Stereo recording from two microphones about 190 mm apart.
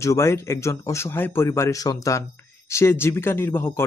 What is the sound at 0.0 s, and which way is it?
Speech, 15° left (ahead or behind).